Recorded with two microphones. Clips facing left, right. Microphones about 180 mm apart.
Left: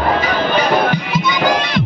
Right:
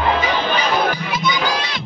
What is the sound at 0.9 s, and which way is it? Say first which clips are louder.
Music: left 3 dB; 60° left (ahead or behind).